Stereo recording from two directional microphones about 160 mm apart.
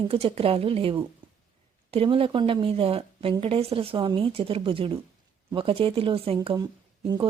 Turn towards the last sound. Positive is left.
turn(degrees=-30)  # may be behind; listen again after turning